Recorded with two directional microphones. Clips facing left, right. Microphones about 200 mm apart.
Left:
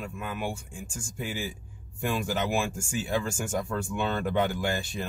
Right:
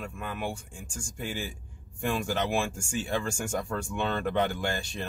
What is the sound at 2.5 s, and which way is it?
Speech, 10° left (ahead or behind).